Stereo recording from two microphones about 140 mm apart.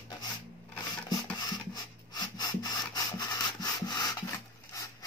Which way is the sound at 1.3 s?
30° left (ahead or behind).